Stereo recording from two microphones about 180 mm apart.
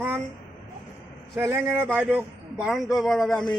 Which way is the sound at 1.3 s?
15° right (ahead or behind).